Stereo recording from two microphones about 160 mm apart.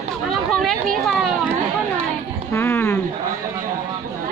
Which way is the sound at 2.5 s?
15° left (ahead or behind).